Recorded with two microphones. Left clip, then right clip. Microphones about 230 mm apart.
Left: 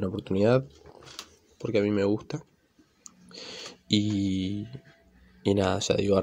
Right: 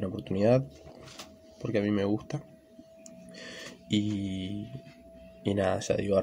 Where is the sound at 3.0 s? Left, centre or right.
Centre.